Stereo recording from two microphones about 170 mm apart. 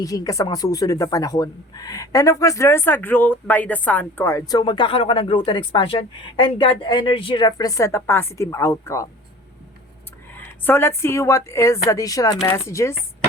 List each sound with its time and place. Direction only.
0.0 s speech: 20° left (ahead or behind)
10.3 s speech: 10° left (ahead or behind)